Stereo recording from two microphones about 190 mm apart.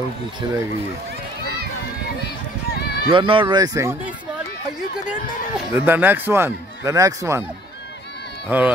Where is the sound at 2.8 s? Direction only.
60° left (ahead or behind).